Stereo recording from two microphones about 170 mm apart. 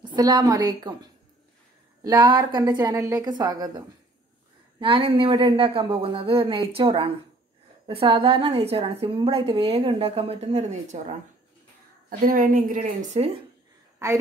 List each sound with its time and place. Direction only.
0.0 s a woman's voice: 25° right (ahead or behind); by 11.1 s 45° right (ahead or behind)
12.2 s a woman's voice: 55° right (ahead or behind); by 13.4 s 40° right (ahead or behind)
13.9 s a woman's voice: 15° right (ahead or behind)